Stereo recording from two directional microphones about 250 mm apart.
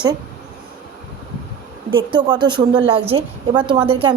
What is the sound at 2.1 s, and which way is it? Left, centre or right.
A woman's voice, centre.